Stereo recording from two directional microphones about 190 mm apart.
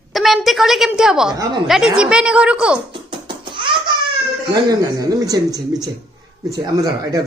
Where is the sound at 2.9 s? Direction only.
25° right (ahead or behind).